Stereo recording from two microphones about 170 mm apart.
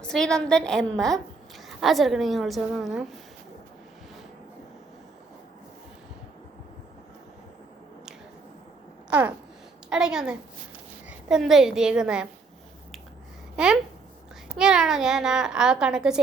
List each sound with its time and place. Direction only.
0.0 s a woman's voice: 5° left (ahead or behind)
9.0 s babbling: 10° right (ahead or behind)
9.9 s a woman's voice: 5° right (ahead or behind)
13.6 s a woman's voice: 5° right (ahead or behind)